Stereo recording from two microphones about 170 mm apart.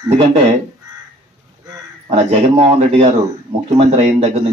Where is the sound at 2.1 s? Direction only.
35° right (ahead or behind).